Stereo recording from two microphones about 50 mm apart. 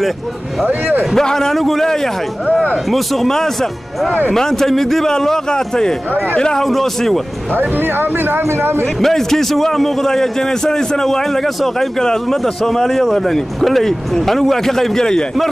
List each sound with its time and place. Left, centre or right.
0.7 s speech: right
1.1 s a man's voice: centre
6.6 s speech: centre
7.5 s speech: right
9.0 s a man's voice: centre